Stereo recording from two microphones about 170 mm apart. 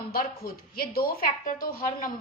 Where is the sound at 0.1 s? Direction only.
60° left (ahead or behind).